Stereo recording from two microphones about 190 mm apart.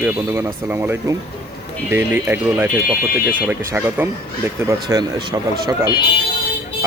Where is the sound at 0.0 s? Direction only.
10° right (ahead or behind).